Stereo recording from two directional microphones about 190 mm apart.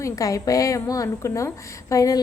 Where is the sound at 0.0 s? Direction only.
15° left (ahead or behind).